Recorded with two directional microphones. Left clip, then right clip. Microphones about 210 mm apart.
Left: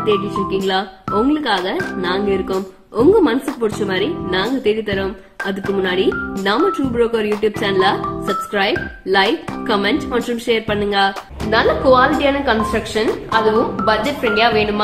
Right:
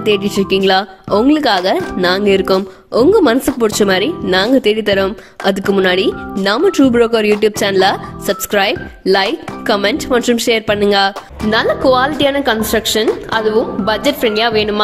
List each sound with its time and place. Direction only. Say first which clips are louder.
0.0 s speech: right 3 dB; 50° right (ahead or behind)